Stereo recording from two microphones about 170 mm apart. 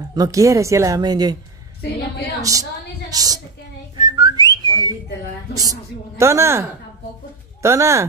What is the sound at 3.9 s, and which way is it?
Whistling, 25° right (ahead or behind).